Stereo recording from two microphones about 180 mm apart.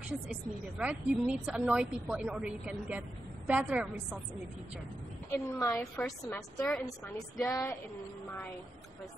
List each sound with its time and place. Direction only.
0.3 s a woman's voice: 5° right (ahead or behind)
5.3 s a woman's voice: 15° left (ahead or behind)
6.0 s a woman's voice: centre (ahead or behind)
7.4 s a woman's voice: 20° left (ahead or behind)